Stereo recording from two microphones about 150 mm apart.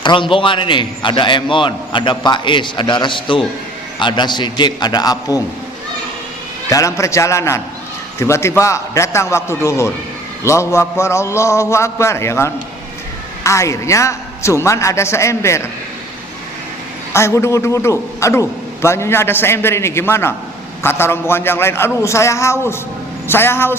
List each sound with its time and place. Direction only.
0.0 s a man's voice: 35° left (ahead or behind)
6.7 s a man's voice: 20° left (ahead or behind)
17.1 s a man's voice: 20° left (ahead or behind)